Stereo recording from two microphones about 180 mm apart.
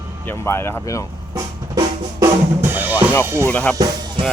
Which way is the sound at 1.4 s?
20° right (ahead or behind).